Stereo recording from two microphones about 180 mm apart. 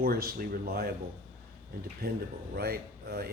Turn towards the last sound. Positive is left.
turn(degrees=-60)  # may be behind; listen again after turning